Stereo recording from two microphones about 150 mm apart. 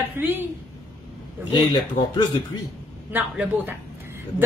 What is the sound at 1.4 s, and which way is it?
Speech, 35° left (ahead or behind).